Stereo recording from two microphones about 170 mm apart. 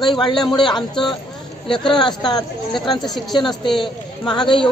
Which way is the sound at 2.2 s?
25° left (ahead or behind).